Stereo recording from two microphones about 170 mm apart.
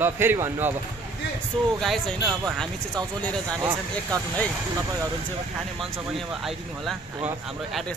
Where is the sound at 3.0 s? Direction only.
25° right (ahead or behind).